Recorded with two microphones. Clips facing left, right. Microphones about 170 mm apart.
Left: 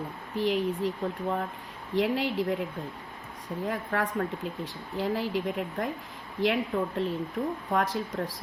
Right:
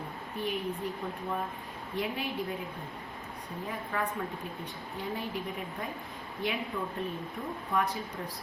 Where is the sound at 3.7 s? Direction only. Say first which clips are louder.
Left 4 dB; 85° left.